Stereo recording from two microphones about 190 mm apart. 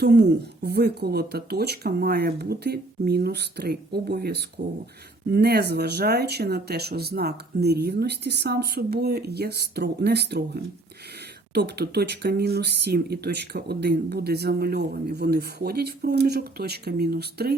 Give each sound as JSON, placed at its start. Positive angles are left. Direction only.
{"t": 0.0, "sound": "speech", "side_deg": -60}